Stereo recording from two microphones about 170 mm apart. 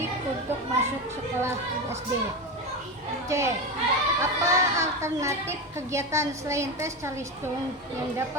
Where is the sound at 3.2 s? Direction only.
15° right (ahead or behind).